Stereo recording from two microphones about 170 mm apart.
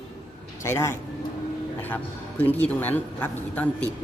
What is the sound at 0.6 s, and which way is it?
Speech, 15° left (ahead or behind).